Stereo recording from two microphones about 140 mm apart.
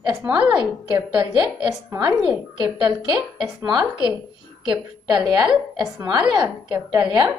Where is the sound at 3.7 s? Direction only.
5° right (ahead or behind).